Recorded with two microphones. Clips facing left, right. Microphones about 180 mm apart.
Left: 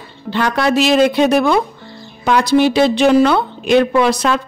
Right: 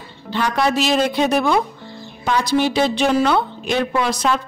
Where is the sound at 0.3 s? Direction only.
75° left (ahead or behind).